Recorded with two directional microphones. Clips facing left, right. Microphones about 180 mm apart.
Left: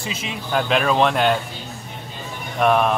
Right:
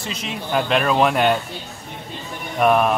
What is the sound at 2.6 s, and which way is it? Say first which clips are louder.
Speech: right 1 dB; 5° right (ahead or behind).